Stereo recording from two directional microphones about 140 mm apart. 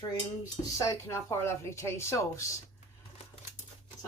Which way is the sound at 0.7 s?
20° left (ahead or behind).